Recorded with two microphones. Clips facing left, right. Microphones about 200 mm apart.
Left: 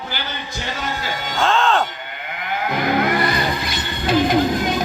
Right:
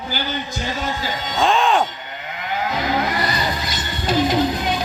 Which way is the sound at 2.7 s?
55° left (ahead or behind).